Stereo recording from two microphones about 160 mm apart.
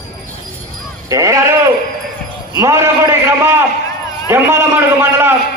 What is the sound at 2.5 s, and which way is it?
A man's voice, 20° right (ahead or behind).